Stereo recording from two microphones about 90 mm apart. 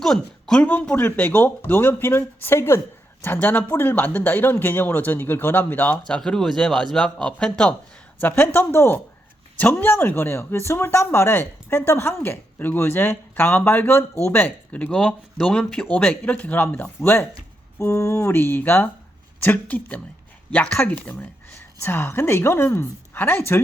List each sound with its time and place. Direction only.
0.0 s speech: 5° left (ahead or behind); by 2.8 s 30° left (ahead or behind)
3.3 s speech: 15° left (ahead or behind)
6.1 s speech: 5° left (ahead or behind)
8.2 s speech: 25° left (ahead or behind)